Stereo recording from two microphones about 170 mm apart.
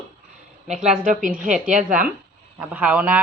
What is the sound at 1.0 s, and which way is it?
A woman's voice, 50° right (ahead or behind).